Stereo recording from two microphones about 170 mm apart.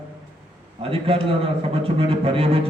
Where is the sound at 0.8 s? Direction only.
35° right (ahead or behind).